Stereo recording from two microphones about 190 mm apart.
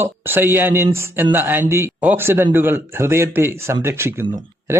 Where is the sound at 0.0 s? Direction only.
10° right (ahead or behind).